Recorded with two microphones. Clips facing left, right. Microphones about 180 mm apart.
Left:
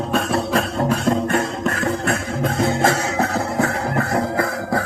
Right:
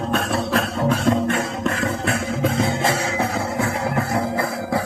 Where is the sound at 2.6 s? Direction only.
50° left (ahead or behind).